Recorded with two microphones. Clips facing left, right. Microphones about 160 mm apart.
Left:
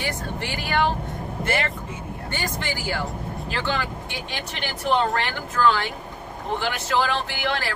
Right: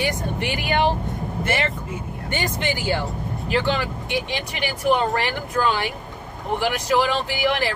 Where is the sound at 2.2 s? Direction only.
20° right (ahead or behind).